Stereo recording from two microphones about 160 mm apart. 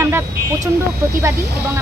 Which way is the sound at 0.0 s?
15° right (ahead or behind).